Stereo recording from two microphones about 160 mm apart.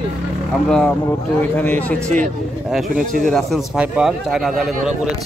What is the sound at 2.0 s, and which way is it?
Speech, 50° right (ahead or behind).